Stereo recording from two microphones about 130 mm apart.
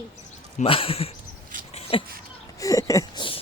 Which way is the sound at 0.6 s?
45° left (ahead or behind).